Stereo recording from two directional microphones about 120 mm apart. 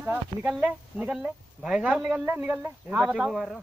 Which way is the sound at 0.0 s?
15° right (ahead or behind).